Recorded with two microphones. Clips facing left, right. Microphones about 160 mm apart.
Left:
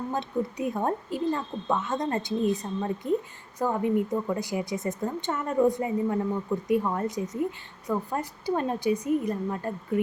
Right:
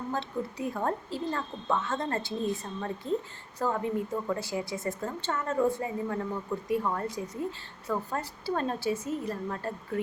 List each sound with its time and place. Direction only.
0.1 s a woman's voice: 20° left (ahead or behind)